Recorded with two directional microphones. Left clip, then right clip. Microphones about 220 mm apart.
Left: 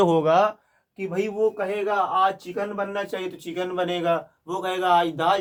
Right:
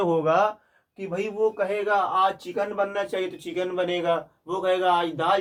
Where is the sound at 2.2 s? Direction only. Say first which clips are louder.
Left 1 dB; 5° left (ahead or behind).